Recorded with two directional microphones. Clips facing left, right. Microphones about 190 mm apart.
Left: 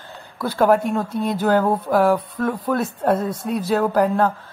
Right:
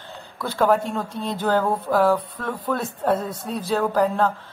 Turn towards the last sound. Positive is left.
turn(degrees=10)  # may be behind; listen again after turning